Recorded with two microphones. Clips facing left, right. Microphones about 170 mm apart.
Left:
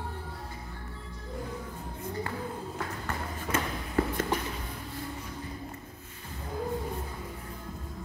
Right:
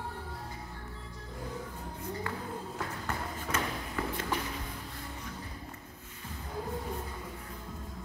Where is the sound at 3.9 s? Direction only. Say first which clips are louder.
Left 7 dB; 40° left (ahead or behind).